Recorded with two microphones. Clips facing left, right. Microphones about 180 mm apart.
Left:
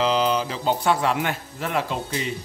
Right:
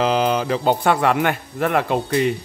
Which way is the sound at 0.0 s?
55° right (ahead or behind).